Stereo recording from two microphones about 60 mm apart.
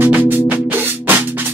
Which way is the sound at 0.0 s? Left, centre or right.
Right.